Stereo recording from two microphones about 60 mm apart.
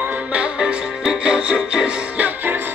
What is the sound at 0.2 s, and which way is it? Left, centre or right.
Music, right.